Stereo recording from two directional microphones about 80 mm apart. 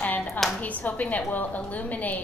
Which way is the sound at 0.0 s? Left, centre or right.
Centre.